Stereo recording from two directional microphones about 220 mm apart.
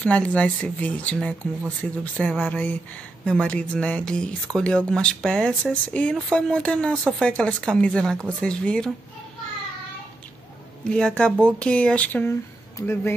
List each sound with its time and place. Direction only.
0.0 s speech: 5° left (ahead or behind)
10.8 s speech: 5° left (ahead or behind)